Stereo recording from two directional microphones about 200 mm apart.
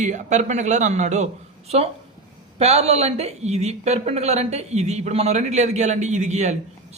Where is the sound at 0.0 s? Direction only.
35° right (ahead or behind).